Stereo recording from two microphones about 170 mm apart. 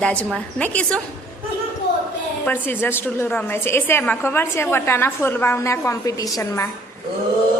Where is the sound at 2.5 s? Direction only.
15° left (ahead or behind).